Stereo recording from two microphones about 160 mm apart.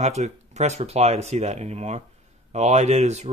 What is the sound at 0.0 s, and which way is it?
Speech, 45° right (ahead or behind).